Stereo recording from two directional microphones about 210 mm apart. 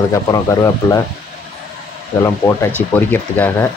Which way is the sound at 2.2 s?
15° left (ahead or behind).